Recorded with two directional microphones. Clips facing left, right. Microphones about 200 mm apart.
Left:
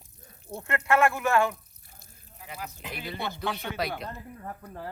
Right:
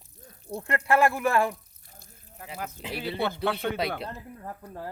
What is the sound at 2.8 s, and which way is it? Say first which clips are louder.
Speech: right 5 dB; 30° right (ahead or behind).